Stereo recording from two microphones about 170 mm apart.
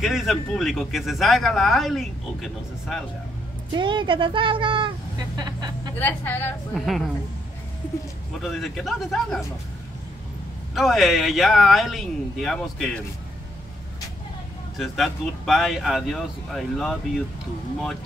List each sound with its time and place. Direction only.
0.0 s speech: centre (ahead or behind)
3.7 s speech: 30° right (ahead or behind)
5.9 s a woman's voice: 10° left (ahead or behind)
6.7 s speech: centre (ahead or behind)
8.4 s speech: centre (ahead or behind)
10.7 s speech: centre (ahead or behind)
14.8 s speech: centre (ahead or behind)